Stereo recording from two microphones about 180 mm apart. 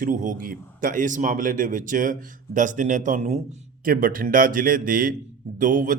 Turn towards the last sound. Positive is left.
turn(degrees=-45)  # may be behind; listen again after turning